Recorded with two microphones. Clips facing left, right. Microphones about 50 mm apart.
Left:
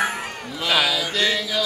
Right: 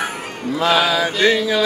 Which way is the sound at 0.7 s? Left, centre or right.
Right.